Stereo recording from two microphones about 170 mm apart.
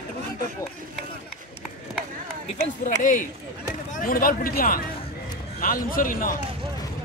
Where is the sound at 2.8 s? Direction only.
50° left (ahead or behind).